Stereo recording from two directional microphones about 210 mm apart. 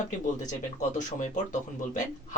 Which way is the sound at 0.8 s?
35° left (ahead or behind).